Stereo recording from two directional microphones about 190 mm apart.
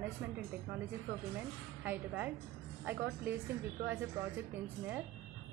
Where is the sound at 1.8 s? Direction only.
10° right (ahead or behind).